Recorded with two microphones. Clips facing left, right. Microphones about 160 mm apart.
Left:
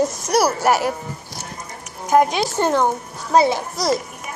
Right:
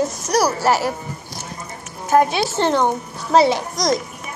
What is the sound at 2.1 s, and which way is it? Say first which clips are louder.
Speech: even; 15° left (ahead or behind).